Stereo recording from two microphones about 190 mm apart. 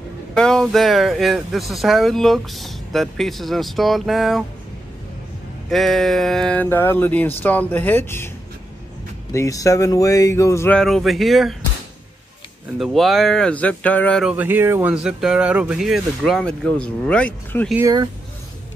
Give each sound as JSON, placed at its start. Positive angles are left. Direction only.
{"t": 0.3, "sound": "speech", "side_deg": 5}
{"t": 5.7, "sound": "speech", "side_deg": 0}
{"t": 9.3, "sound": "speech", "side_deg": 15}
{"t": 12.7, "sound": "speech", "side_deg": 0}
{"t": 14.3, "sound": "speech", "side_deg": -10}
{"t": 17.7, "sound": "speech", "side_deg": -20}